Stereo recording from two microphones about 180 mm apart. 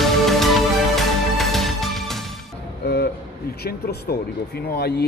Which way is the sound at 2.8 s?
60° left (ahead or behind).